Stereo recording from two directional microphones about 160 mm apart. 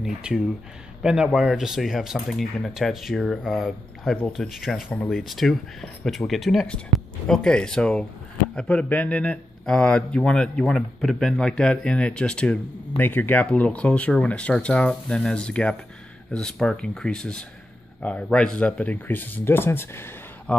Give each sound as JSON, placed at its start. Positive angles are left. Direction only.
{"t": 0.0, "sound": "a man's voice", "side_deg": -5}